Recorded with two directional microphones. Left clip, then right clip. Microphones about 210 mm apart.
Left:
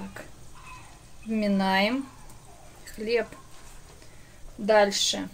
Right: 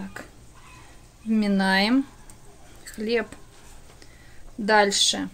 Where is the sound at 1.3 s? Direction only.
30° right (ahead or behind).